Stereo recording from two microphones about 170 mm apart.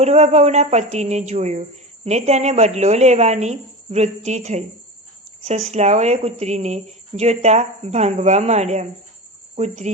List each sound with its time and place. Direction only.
0.0 s speech: 40° right (ahead or behind)